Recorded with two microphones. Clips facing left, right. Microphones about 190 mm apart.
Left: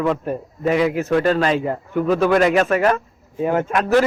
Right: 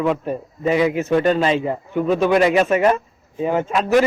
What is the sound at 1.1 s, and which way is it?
Speech, 15° right (ahead or behind).